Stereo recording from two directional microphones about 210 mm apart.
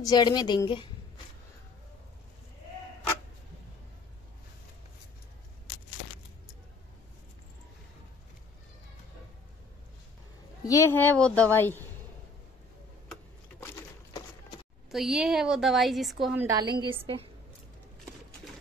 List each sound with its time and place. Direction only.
0.0 s a woman's voice: 20° left (ahead or behind)
10.6 s a woman's voice: 15° left (ahead or behind)
13.1 s a sound: 10° left (ahead or behind)
14.9 s a woman's voice: centre (ahead or behind)
16.4 s a woman's voice: 20° right (ahead or behind)